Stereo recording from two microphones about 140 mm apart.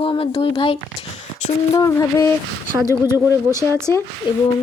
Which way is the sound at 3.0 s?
20° right (ahead or behind).